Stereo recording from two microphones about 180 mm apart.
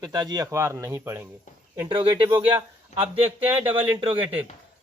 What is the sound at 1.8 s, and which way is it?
A man's voice, 25° right (ahead or behind).